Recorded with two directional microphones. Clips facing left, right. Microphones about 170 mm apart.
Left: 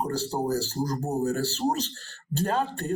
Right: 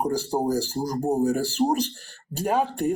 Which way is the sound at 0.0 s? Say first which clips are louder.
Right 4 dB; 10° right (ahead or behind).